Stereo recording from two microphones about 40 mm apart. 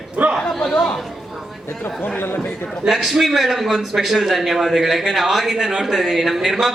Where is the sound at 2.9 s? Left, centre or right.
Centre.